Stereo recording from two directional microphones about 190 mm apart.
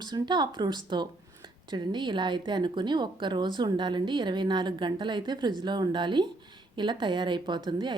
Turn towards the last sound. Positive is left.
turn(degrees=-25)  # may be behind; listen again after turning